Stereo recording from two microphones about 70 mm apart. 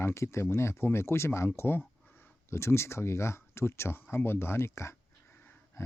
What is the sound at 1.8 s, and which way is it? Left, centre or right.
Speech, left.